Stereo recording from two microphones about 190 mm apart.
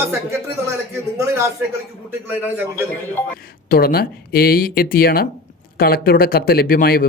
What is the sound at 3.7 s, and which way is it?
Speech, 50° left (ahead or behind).